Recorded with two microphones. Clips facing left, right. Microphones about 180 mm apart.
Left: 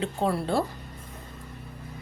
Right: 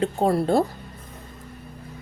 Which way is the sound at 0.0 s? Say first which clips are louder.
Right 6 dB; 45° right (ahead or behind).